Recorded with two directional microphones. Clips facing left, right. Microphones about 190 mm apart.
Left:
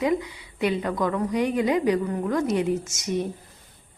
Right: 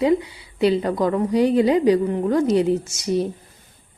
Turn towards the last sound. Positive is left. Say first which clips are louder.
# right 5 dB
turn(degrees=-35)  # may be behind; listen again after turning